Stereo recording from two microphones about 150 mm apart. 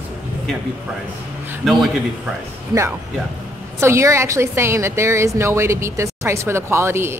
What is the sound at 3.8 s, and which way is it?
A woman's voice, 20° right (ahead or behind).